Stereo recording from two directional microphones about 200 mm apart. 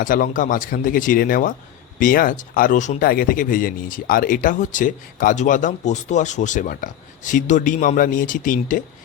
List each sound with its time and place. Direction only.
0.0 s speech: 45° left (ahead or behind)